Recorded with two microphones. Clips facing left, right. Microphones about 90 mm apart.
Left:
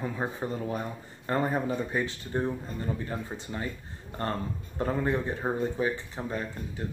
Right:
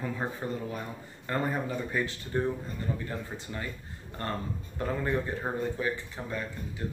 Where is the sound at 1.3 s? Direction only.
25° left (ahead or behind).